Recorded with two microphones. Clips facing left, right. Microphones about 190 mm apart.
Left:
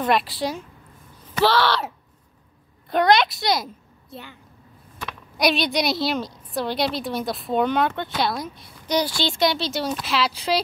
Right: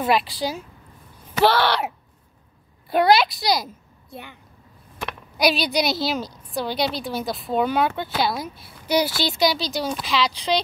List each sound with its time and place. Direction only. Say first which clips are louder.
0.0 s a woman's voice: even; centre (ahead or behind)
1.6 s speech: even; 15° right (ahead or behind)
2.9 s a woman's voice: right 1 dB; 5° right (ahead or behind)
5.4 s a woman's voice: even; centre (ahead or behind)